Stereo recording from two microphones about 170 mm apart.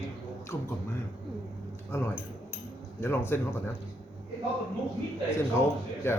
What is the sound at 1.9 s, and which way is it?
Speech, 15° left (ahead or behind).